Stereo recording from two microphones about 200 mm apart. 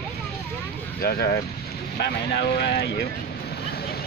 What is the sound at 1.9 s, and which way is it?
Vehicle, 55° left (ahead or behind).